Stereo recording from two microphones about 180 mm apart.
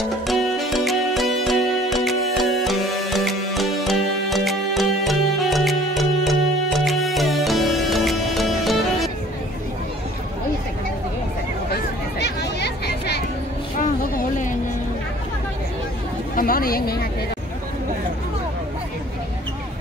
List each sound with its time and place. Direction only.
0.3 s music: centre (ahead or behind)
11.7 s chatter: 70° left (ahead or behind)
13.7 s a sound: 45° left (ahead or behind)
16.3 s chatter: 55° left (ahead or behind)